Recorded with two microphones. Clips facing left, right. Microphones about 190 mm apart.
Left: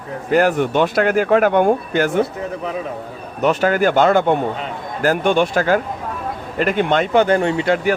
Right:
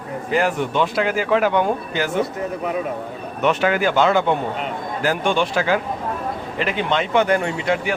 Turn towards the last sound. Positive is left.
turn(degrees=40)  # may be behind; listen again after turning